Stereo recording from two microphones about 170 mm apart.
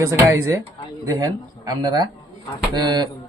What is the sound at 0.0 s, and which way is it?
Speech, 20° right (ahead or behind).